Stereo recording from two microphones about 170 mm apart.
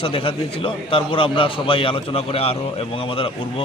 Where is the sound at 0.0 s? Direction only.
35° left (ahead or behind).